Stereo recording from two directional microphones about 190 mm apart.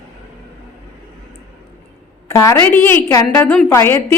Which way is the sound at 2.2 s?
15° left (ahead or behind).